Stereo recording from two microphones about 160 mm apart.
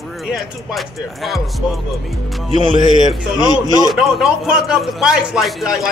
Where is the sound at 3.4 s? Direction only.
25° left (ahead or behind).